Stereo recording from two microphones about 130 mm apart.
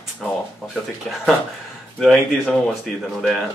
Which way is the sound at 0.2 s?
Centre (ahead or behind).